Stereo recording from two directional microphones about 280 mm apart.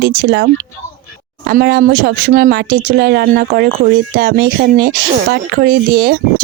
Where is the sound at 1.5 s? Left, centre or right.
Right.